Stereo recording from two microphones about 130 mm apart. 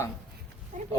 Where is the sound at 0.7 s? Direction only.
85° right.